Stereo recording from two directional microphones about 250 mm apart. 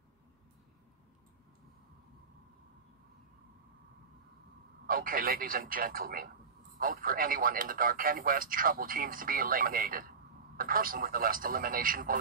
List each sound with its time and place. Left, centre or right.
4.8 s speech: right